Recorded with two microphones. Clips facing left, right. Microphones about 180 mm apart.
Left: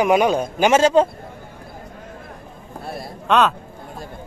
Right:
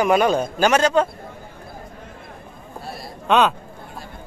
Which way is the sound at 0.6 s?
25° left (ahead or behind).